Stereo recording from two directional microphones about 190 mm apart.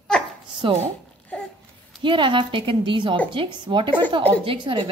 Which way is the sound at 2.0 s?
25° right (ahead or behind).